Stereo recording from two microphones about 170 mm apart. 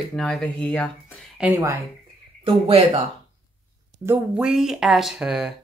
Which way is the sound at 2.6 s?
30° right (ahead or behind).